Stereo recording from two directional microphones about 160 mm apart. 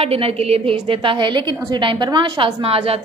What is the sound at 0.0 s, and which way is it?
A woman's voice, 40° right (ahead or behind).